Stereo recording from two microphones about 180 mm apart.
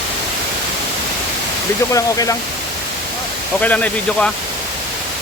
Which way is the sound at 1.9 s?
20° left (ahead or behind).